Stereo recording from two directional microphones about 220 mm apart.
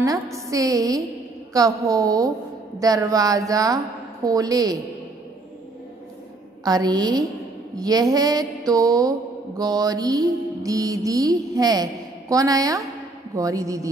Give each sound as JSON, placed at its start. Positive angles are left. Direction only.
{"t": 0.0, "sound": "a woman's voice", "side_deg": -15}
{"t": 6.6, "sound": "a woman's voice", "side_deg": -15}